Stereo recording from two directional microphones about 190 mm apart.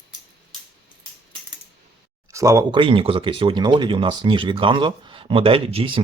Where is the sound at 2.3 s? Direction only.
15° right (ahead or behind).